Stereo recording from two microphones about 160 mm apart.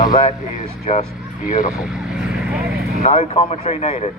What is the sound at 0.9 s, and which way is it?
Speech, 45° left (ahead or behind).